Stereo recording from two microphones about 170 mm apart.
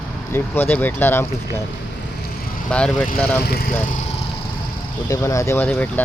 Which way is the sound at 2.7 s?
5° left (ahead or behind).